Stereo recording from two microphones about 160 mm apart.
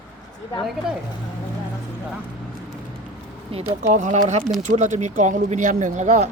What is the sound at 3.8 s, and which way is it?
Speech, 50° right (ahead or behind).